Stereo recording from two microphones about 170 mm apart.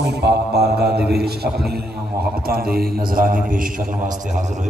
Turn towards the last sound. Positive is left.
turn(degrees=-45)  # may be behind; listen again after turning